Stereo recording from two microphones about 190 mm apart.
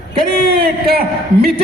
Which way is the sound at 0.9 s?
55° right (ahead or behind).